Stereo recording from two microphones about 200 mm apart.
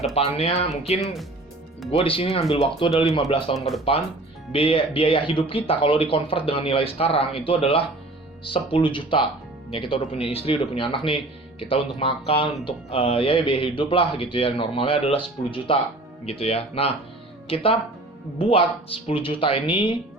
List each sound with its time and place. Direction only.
0.1 s speech: 30° left (ahead or behind)